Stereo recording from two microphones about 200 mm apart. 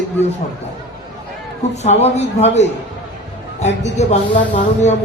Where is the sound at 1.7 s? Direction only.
35° left (ahead or behind).